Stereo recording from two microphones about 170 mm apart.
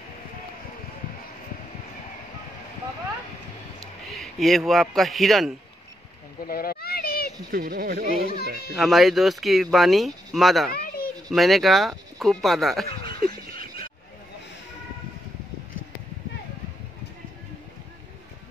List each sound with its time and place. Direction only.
4.1 s a man's voice: centre (ahead or behind)
6.4 s a sound: 60° left (ahead or behind)
7.5 s speech: 55° right (ahead or behind)
8.7 s speech: centre (ahead or behind)
10.7 s a sound: 65° left (ahead or behind)
11.2 s speech: centre (ahead or behind)
13.2 s frog: 60° right (ahead or behind)